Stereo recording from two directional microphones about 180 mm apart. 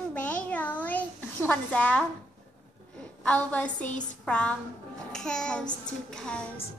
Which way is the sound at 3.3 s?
5° left (ahead or behind).